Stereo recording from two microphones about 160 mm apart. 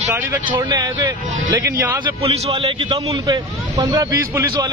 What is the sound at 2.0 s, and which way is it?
Speech, 35° right (ahead or behind).